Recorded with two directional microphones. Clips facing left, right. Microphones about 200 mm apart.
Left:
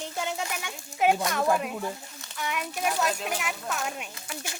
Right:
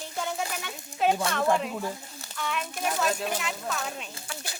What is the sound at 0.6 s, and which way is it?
Speech, 15° left (ahead or behind).